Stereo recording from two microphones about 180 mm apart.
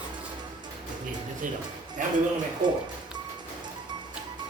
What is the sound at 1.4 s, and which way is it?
Speech, 50° right (ahead or behind).